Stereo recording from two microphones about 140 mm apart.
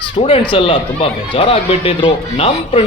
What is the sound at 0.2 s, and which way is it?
Speech, 45° left (ahead or behind).